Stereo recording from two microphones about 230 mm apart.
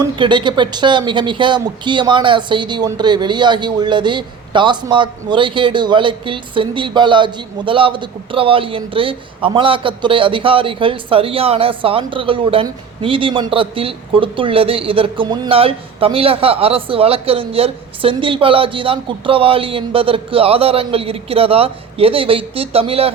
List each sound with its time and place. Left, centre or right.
0.2 s speech: centre